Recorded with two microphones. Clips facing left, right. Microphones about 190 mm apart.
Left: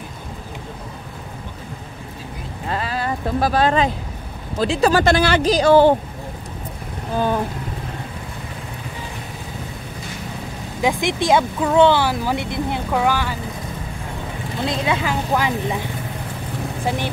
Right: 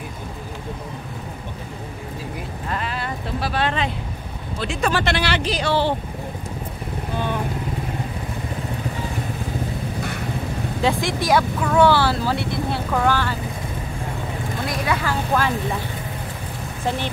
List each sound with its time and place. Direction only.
2.7 s a sound: 40° left (ahead or behind)
4.6 s speech: 35° left (ahead or behind)
10.8 s speech: 15° left (ahead or behind)
14.6 s speech: 25° left (ahead or behind)
16.8 s speech: 10° left (ahead or behind)